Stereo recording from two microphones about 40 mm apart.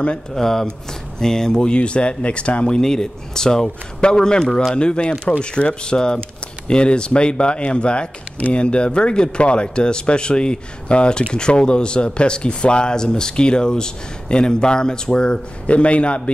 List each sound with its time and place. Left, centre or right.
0.3 s speech: centre
1.7 s speech: left